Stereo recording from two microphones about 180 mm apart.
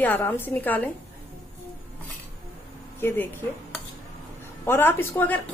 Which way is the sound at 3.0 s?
10° left (ahead or behind).